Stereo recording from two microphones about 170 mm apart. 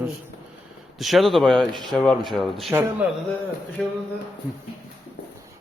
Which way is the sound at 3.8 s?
5° left (ahead or behind).